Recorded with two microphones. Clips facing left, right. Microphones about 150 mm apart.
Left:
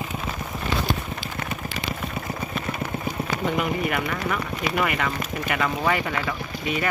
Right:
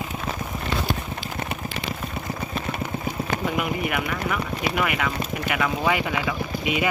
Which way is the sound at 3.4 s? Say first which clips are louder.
Left 3 dB; 10° right (ahead or behind).